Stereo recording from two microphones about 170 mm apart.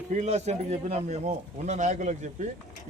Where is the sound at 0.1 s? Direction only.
40° right (ahead or behind).